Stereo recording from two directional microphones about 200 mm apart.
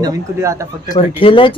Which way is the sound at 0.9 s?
25° left (ahead or behind).